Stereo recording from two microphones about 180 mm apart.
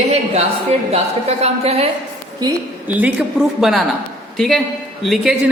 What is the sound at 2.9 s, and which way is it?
A woman's voice, 10° right (ahead or behind).